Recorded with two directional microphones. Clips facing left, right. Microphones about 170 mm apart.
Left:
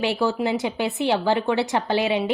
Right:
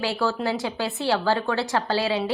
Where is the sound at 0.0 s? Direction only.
20° left (ahead or behind).